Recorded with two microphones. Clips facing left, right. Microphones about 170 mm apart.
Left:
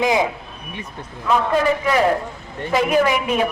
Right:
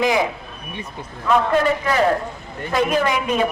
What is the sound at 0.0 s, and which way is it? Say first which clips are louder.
Speech: even; 20° left (ahead or behind).